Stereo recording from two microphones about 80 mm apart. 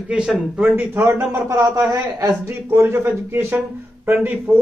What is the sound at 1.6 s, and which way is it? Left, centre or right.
Speech, right.